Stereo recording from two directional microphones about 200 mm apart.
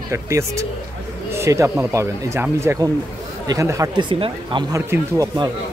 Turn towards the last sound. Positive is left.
turn(degrees=-20)  # may be behind; listen again after turning